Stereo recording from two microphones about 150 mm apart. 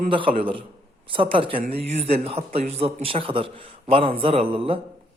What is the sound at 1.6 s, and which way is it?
A man's voice, 45° right (ahead or behind).